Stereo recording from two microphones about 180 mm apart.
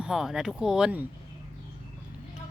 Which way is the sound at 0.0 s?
Centre (ahead or behind).